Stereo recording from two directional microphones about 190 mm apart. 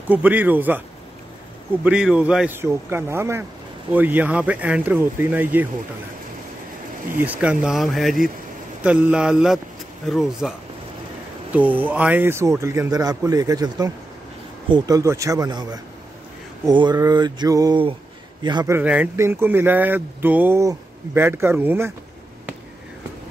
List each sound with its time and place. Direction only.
0.1 s speech: 10° right (ahead or behind)
1.9 s speech: 5° right (ahead or behind)
7.2 s speech: 5° right (ahead or behind)
11.5 s speech: 10° right (ahead or behind)
14.7 s a sound: 20° right (ahead or behind)
18.8 s speech: 10° right (ahead or behind)